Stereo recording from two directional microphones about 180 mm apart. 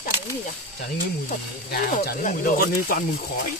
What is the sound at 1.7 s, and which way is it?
Speech, 50° left (ahead or behind).